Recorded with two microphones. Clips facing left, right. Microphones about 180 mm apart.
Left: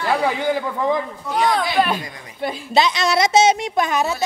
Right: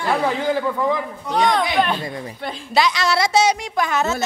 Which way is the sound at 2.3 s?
10° left (ahead or behind).